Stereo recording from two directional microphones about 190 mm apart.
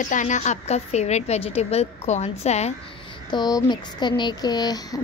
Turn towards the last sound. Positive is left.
turn(degrees=20)  # may be behind; listen again after turning